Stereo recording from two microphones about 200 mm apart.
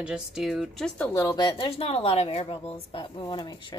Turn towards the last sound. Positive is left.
turn(degrees=25)  # may be behind; listen again after turning